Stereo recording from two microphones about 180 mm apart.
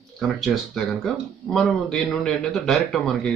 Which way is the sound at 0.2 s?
Centre (ahead or behind).